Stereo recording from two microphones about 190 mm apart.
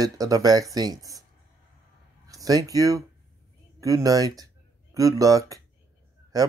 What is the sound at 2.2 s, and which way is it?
Speech, 20° right (ahead or behind).